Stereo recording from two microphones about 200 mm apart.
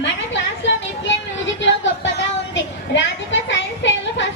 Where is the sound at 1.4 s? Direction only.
65° left (ahead or behind).